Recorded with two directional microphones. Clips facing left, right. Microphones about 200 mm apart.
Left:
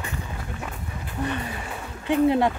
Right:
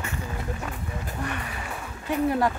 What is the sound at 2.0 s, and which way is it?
Speech, 20° left (ahead or behind).